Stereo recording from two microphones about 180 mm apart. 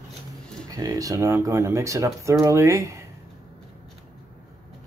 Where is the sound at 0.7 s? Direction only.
20° right (ahead or behind).